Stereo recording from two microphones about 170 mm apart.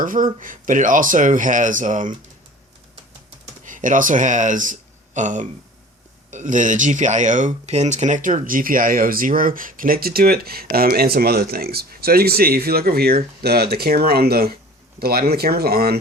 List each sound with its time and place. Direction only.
0.0 s speech: 50° right (ahead or behind)
3.6 s speech: 50° right (ahead or behind); by 16.0 s 65° right (ahead or behind)